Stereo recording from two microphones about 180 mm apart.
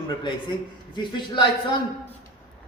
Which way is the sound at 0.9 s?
25° left (ahead or behind).